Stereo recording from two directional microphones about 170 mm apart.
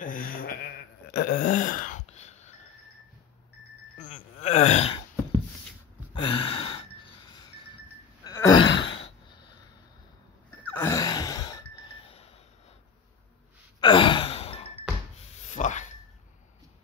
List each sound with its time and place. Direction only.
0.0 s bleat: 55° left (ahead or behind)
1.1 s throat clearing: 55° left (ahead or behind)
4.0 s groan: 45° left (ahead or behind)
6.1 s gasp: 30° left (ahead or behind)
8.6 s gasp: 90° left
10.7 s a sound: 15° left (ahead or behind); by 12.3 s 30° left (ahead or behind)
13.7 s sigh: 30° left (ahead or behind)
15.5 s a sound: 45° left (ahead or behind)